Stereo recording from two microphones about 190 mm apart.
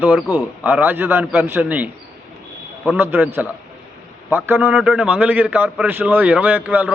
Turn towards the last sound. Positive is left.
turn(degrees=-10)  # may be behind; listen again after turning